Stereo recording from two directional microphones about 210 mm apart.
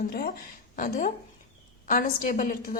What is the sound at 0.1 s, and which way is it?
A woman's voice, 45° left (ahead or behind).